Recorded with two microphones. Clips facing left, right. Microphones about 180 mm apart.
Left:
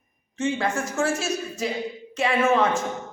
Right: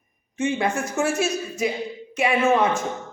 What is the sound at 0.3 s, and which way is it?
Speech, 15° right (ahead or behind).